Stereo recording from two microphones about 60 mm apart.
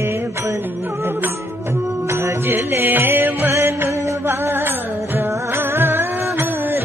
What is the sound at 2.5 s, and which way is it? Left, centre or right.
Music, right.